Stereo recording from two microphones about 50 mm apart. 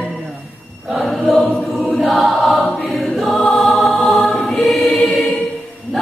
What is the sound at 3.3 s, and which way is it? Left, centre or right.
Music, centre.